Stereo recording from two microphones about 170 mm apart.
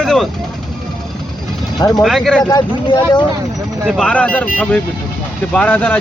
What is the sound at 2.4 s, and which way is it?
Speech, 25° left (ahead or behind).